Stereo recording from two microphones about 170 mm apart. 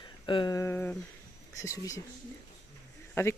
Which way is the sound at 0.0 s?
30° left (ahead or behind).